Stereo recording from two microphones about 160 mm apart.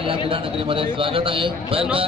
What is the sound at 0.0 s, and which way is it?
A man's voice, 35° right (ahead or behind).